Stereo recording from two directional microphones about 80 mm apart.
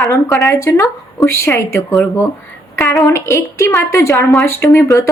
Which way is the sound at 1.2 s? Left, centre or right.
Left.